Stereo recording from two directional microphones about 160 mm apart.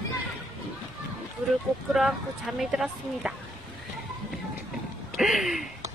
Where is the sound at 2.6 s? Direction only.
5° right (ahead or behind).